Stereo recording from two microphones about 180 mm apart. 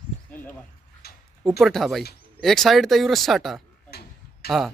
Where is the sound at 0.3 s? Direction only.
10° left (ahead or behind).